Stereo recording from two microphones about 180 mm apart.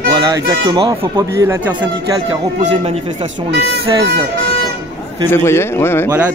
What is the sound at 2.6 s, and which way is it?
Speech, 40° right (ahead or behind).